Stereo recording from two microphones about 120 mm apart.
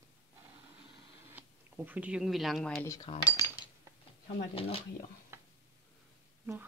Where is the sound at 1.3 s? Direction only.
15° right (ahead or behind); by 2.8 s centre (ahead or behind).